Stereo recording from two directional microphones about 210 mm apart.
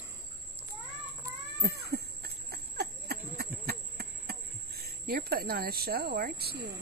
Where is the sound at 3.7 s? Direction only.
50° right (ahead or behind).